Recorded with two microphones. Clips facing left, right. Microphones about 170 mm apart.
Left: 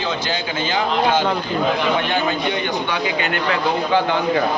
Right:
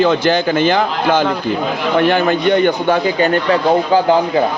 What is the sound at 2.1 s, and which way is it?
A man's voice, 55° right (ahead or behind).